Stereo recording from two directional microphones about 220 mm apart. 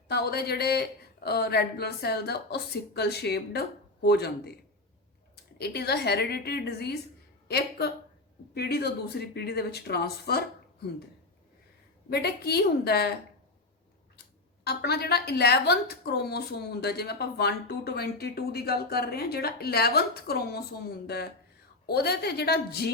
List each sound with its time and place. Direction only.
0.1 s a woman's voice: 45° left (ahead or behind)
5.5 s a woman's voice: 45° left (ahead or behind)
12.1 s a woman's voice: 45° left (ahead or behind)
14.2 s a woman's voice: 45° left (ahead or behind)
21.8 s a woman's voice: 45° left (ahead or behind)